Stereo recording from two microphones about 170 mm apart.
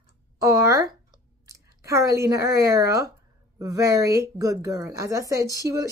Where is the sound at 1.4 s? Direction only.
20° right (ahead or behind).